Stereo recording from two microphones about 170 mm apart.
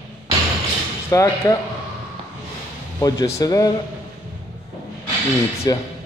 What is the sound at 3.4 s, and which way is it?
Speech, 20° left (ahead or behind).